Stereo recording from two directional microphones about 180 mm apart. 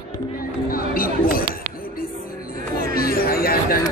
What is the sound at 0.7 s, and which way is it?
Chatter, 55° left (ahead or behind).